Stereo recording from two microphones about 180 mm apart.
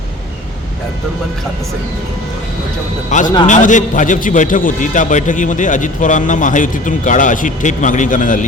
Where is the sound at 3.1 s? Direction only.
40° left (ahead or behind).